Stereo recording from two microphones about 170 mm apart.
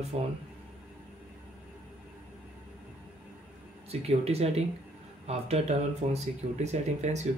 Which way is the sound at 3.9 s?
35° right (ahead or behind).